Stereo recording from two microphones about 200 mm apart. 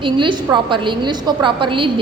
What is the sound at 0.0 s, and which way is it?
A woman's voice, 25° right (ahead or behind).